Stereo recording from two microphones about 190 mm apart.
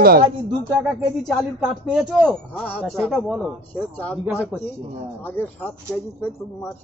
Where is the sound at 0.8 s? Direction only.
Centre (ahead or behind).